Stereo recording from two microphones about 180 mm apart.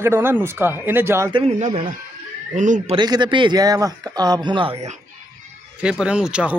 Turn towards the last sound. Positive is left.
turn(degrees=-5)  # may be behind; listen again after turning